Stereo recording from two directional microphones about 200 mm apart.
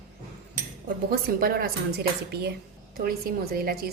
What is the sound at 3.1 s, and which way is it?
Speech, 50° right (ahead or behind).